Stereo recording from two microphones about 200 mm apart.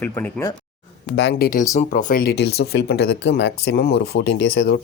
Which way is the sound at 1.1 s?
60° left (ahead or behind).